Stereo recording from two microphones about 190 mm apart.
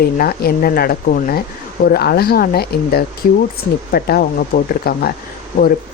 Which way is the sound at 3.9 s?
50° left (ahead or behind).